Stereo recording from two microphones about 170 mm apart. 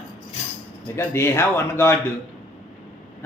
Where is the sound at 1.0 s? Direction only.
15° left (ahead or behind).